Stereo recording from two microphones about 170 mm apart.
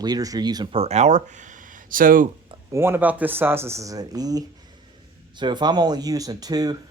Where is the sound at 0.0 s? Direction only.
20° right (ahead or behind); by 2.2 s 55° right (ahead or behind).